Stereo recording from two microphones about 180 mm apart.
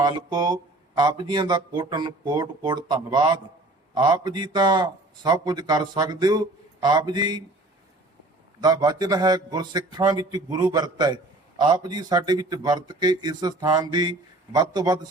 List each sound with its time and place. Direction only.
0.0 s speech: 25° right (ahead or behind)
8.6 s speech: 20° right (ahead or behind)